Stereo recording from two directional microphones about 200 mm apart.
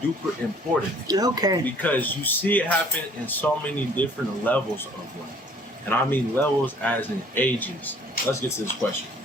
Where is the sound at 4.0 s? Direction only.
10° left (ahead or behind).